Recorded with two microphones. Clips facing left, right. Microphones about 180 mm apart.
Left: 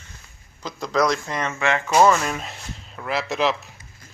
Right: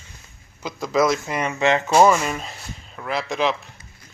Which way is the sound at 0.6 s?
5° right (ahead or behind).